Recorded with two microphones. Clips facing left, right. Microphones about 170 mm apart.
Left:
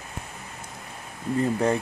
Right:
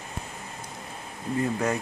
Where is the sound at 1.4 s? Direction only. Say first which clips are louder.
Left 3 dB; 30° left (ahead or behind).